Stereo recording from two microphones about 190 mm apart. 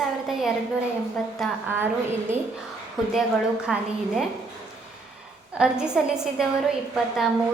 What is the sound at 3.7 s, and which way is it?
Speech, 5° right (ahead or behind).